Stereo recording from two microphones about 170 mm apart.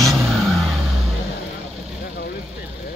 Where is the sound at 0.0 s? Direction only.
Centre (ahead or behind).